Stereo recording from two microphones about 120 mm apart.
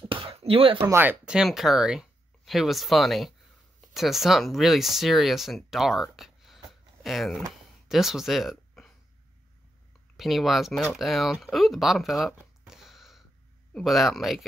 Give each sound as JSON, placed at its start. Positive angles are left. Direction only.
{"t": 0.1, "sound": "a sound", "side_deg": -50}
{"t": 0.9, "sound": "speech", "side_deg": -10}
{"t": 10.1, "sound": "speech", "side_deg": 0}